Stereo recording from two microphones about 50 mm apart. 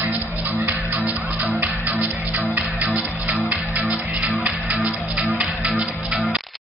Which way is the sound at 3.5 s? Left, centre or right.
Right.